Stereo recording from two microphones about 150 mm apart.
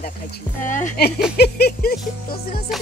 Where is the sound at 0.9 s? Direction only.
90° left.